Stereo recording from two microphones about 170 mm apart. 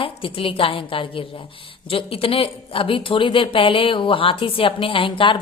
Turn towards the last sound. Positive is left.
turn(degrees=30)  # may be behind; listen again after turning